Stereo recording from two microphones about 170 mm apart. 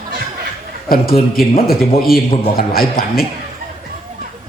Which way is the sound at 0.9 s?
60° left (ahead or behind).